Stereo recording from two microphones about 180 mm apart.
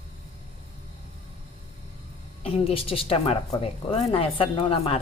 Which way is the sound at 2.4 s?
30° left (ahead or behind).